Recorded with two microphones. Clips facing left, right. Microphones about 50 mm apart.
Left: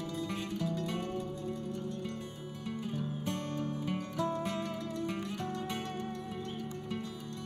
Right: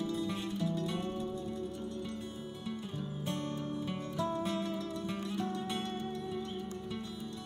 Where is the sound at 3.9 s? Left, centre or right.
Left.